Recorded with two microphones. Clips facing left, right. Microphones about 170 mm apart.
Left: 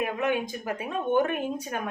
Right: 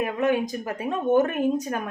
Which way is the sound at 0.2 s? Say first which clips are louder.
Right 4 dB; 40° right (ahead or behind).